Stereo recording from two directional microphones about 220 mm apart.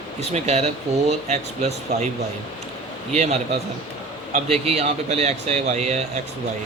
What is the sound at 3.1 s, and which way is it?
Speech, 30° right (ahead or behind).